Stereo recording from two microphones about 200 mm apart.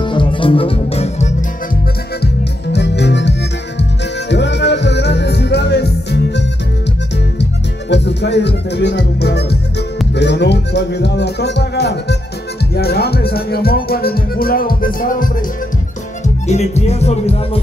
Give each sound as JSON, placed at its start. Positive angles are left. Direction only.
{"t": 0.0, "sound": "music", "side_deg": 25}
{"t": 2.7, "sound": "music", "side_deg": 60}
{"t": 7.9, "sound": "speech", "side_deg": 60}
{"t": 16.4, "sound": "music", "side_deg": 35}